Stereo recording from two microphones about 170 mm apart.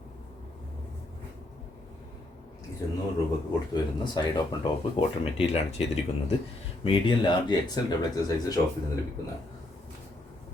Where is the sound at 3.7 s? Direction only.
25° left (ahead or behind).